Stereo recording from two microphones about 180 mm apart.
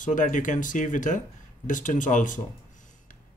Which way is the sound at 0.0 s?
45° left (ahead or behind).